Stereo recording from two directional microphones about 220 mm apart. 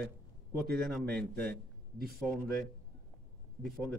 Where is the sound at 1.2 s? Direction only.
5° left (ahead or behind).